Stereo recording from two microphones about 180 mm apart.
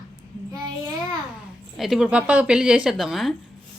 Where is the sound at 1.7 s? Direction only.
Centre (ahead or behind).